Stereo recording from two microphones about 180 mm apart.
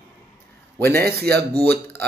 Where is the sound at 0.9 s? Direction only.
60° right (ahead or behind).